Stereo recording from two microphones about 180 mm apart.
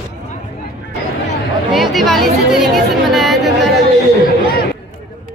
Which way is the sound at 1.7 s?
Centre (ahead or behind).